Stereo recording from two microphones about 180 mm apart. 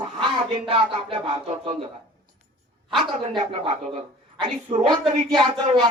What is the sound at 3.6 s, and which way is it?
Speech, 35° right (ahead or behind).